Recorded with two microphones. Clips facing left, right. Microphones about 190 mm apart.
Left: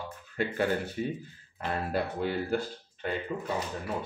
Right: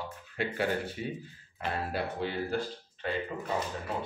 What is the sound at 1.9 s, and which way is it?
Speech, 50° left (ahead or behind).